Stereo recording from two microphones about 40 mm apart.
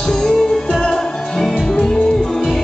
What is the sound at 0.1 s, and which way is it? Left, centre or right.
Music, centre.